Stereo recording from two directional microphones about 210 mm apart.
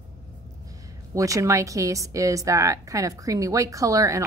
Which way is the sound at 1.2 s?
15° right (ahead or behind).